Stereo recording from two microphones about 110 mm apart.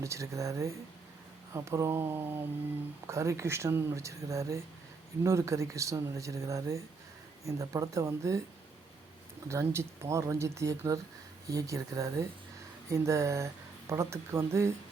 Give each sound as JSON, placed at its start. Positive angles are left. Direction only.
{"t": 0.0, "sound": "speech", "side_deg": -30}
{"t": 9.5, "sound": "speech", "side_deg": -25}